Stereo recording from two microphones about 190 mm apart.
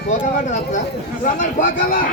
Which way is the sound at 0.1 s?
40° left (ahead or behind).